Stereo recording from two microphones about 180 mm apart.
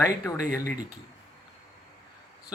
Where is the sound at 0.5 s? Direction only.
20° left (ahead or behind).